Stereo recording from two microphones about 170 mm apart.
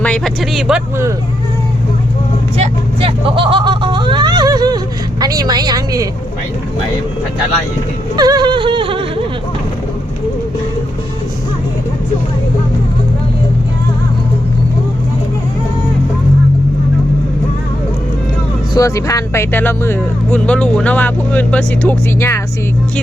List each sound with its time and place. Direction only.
0.0 s speech: 5° left (ahead or behind)
2.6 s vehicle: 35° right (ahead or behind)
5.2 s a woman's voice: 25° right (ahead or behind)
8.1 s a sound: 25° right (ahead or behind)
18.7 s speech: 20° left (ahead or behind)